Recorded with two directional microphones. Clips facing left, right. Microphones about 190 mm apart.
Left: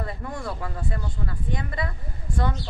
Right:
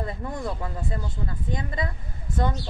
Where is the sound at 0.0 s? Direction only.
20° right (ahead or behind).